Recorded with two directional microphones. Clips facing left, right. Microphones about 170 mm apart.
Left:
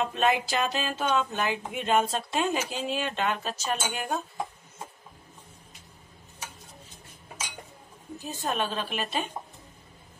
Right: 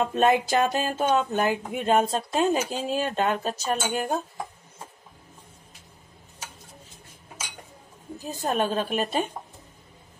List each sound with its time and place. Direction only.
0.0 s speech: 45° right (ahead or behind)
8.3 s a woman's voice: 40° right (ahead or behind)